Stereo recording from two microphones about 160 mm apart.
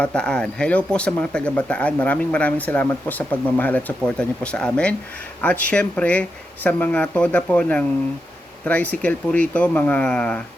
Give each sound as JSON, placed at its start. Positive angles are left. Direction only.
{"t": 0.0, "sound": "speech", "side_deg": 5}